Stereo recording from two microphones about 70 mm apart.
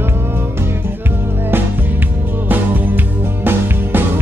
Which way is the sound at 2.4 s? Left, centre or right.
Right.